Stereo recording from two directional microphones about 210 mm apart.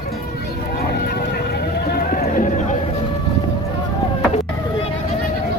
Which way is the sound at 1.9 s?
45° left (ahead or behind).